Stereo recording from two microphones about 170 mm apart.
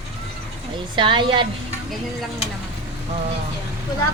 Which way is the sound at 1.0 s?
30° right (ahead or behind).